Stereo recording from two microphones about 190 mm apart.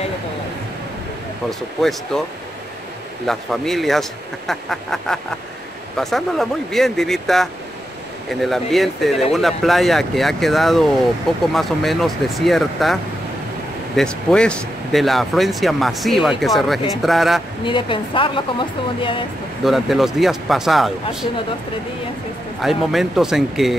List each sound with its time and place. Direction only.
1.5 s speech: centre (ahead or behind)
3.3 s speech: centre (ahead or behind)
17.6 s a woman's voice: 25° left (ahead or behind)
19.6 s speech: centre (ahead or behind)
22.6 s speech: centre (ahead or behind)